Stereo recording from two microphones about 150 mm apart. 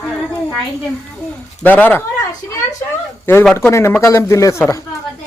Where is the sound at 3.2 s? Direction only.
15° left (ahead or behind).